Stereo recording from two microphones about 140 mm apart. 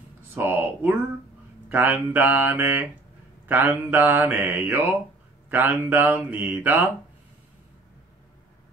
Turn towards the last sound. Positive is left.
turn(degrees=-10)  # may be behind; listen again after turning